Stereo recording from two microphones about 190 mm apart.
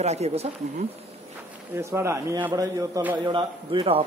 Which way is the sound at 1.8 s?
15° right (ahead or behind).